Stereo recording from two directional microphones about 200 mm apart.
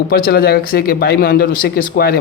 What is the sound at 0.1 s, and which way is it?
Speech, 50° left (ahead or behind).